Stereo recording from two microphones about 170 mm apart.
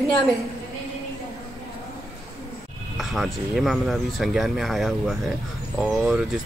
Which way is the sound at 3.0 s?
Centre (ahead or behind).